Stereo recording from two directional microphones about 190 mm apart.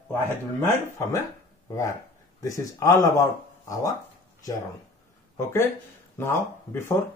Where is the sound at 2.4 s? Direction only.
15° left (ahead or behind).